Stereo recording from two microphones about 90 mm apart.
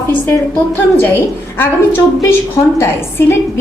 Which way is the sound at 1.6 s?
25° left (ahead or behind).